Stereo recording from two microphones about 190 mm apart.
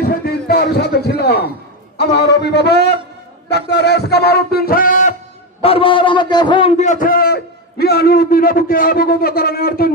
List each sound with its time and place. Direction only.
0.0 s a sound: 55° left (ahead or behind)
5.6 s a man's voice: 30° left (ahead or behind)
6.8 s a man's voice: 45° left (ahead or behind)